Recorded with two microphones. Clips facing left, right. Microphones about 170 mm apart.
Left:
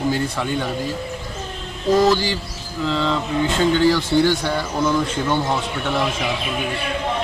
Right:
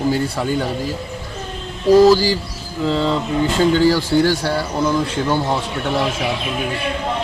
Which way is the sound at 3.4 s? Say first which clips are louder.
Right 2 dB; 5° right (ahead or behind).